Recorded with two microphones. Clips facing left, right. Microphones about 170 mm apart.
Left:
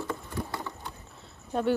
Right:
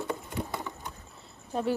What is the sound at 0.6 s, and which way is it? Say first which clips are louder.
Mechanisms: even; 15° right (ahead or behind).